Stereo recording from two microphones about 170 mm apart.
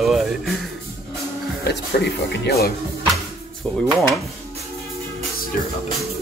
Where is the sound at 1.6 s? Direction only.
75° left (ahead or behind).